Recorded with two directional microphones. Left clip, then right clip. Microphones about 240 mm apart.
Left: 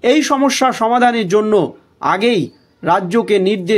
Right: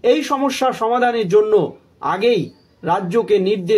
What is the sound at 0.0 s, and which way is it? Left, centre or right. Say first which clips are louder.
Speech: left 3 dB; left.